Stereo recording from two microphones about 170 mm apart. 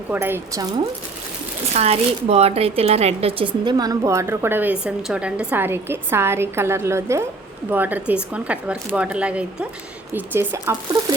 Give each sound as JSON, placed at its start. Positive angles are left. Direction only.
{"t": 0.1, "sound": "speech", "side_deg": -15}
{"t": 1.7, "sound": "speech", "side_deg": -40}